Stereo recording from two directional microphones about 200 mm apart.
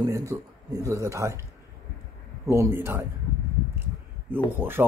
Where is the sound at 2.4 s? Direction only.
15° right (ahead or behind).